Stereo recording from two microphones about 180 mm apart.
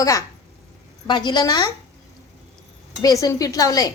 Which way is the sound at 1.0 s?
25° left (ahead or behind).